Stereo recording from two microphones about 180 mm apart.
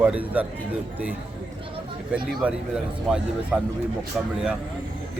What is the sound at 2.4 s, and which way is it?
Speech, 5° right (ahead or behind).